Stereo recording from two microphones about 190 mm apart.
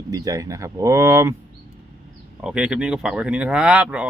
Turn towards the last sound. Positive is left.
turn(degrees=-5)  # may be behind; listen again after turning